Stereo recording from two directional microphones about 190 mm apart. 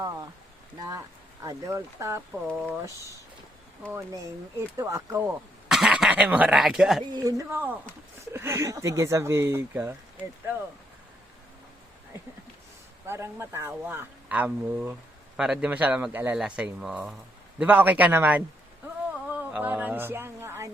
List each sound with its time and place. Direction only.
0.8 s speech: 20° right (ahead or behind)
4.8 s speech: 15° right (ahead or behind)
5.6 s speech: 5° right (ahead or behind)
7.1 s speech: 20° right (ahead or behind)
13.1 s speech: 15° right (ahead or behind)
19.3 s a sound: 10° right (ahead or behind)